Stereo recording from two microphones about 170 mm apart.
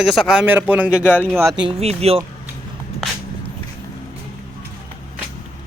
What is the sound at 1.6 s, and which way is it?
Speech, 35° right (ahead or behind).